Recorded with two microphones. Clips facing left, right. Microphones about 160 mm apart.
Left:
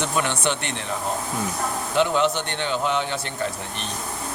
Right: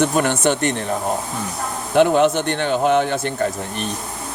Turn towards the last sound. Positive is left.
turn(degrees=-55)  # may be behind; listen again after turning